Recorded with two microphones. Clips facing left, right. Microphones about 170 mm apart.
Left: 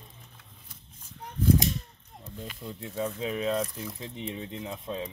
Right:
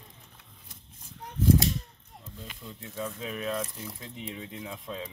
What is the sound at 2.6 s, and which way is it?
Speech, 25° left (ahead or behind).